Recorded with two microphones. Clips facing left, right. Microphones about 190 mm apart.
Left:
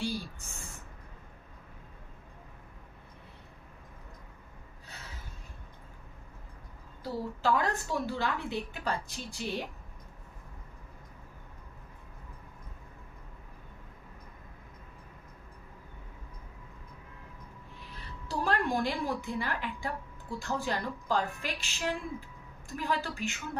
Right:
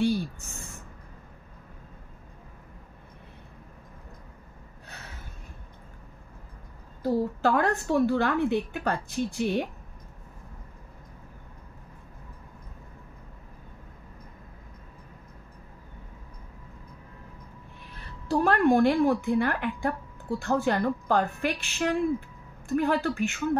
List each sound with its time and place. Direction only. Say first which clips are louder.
7.0 s speech: right 9 dB; 55° right (ahead or behind)
18.3 s speech: right 9 dB; 60° right (ahead or behind)